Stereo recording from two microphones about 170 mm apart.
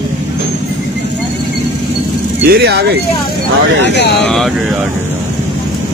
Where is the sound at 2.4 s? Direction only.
70° right (ahead or behind).